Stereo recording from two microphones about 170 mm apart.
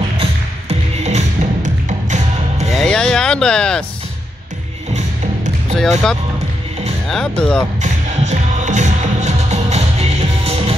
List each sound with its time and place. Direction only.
0.2 s music: 40° right (ahead or behind)
2.7 s a sound: 5° left (ahead or behind)
5.8 s speech: 5° left (ahead or behind)
7.8 s music: 45° right (ahead or behind)